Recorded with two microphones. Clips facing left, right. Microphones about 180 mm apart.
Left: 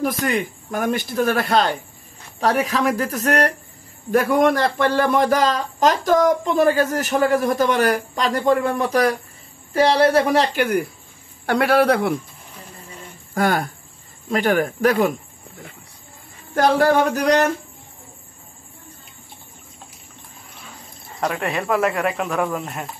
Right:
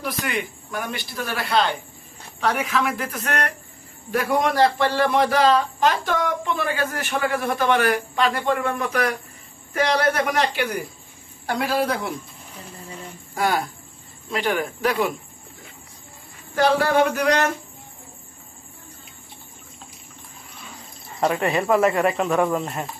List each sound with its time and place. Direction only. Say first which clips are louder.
0.0 s a man's voice: left 6 dB; 45° left (ahead or behind)
10.5 s speech: left 6 dB; 55° left (ahead or behind)
11.4 s a man's voice: left 6 dB; 65° left (ahead or behind)
13.3 s speech: left 3 dB; 50° left (ahead or behind)
16.5 s speech: left 2 dB; 40° left (ahead or behind)
21.2 s speech: right 2 dB; centre (ahead or behind)